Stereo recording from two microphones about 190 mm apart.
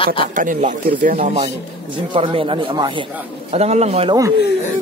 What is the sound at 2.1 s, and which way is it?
Speech, 30° right (ahead or behind).